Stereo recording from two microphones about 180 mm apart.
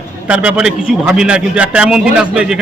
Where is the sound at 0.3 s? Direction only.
5° right (ahead or behind).